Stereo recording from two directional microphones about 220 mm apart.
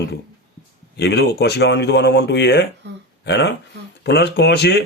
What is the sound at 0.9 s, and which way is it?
Speech, 50° left (ahead or behind).